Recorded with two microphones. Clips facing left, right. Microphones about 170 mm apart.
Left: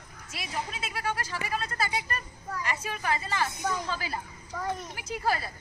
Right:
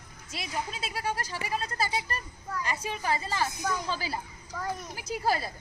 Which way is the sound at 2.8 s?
30° right (ahead or behind).